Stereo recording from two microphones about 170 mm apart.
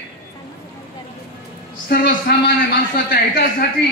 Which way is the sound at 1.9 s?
60° left (ahead or behind).